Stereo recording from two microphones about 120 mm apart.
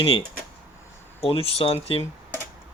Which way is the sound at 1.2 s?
55° left (ahead or behind).